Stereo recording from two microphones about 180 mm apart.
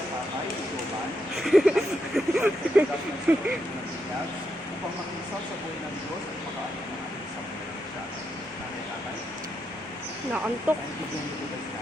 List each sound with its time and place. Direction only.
1.5 s speech: centre (ahead or behind)
2.1 s vehicle: 10° right (ahead or behind)
3.3 s speech: 10° right (ahead or behind)
10.7 s speech: 10° right (ahead or behind)